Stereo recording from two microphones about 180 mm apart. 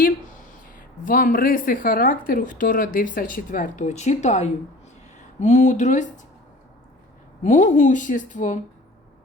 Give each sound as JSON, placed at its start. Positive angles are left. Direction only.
{"t": 0.0, "sound": "speech", "side_deg": 50}
{"t": 7.4, "sound": "speech", "side_deg": 45}